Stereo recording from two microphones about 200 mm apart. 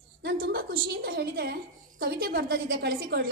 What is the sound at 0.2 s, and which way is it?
A woman's voice, 50° right (ahead or behind).